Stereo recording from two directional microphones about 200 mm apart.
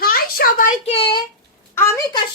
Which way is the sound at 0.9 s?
25° left (ahead or behind).